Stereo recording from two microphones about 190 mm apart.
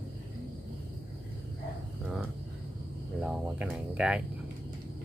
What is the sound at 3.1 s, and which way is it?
Cricket, 5° right (ahead or behind).